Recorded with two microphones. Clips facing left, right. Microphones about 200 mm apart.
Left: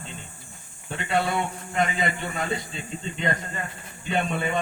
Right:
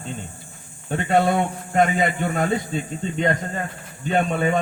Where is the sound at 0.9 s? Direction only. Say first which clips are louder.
Right 7 dB; 50° right (ahead or behind).